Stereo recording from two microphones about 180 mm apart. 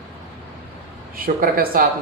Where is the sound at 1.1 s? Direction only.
50° right (ahead or behind).